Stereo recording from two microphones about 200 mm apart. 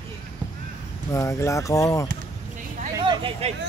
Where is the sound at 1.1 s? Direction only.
15° left (ahead or behind).